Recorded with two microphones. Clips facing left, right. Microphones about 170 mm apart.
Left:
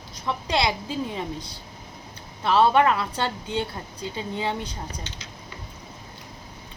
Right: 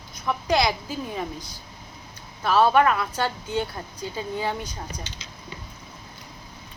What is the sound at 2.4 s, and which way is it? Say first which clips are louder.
Speech: even; 25° left (ahead or behind).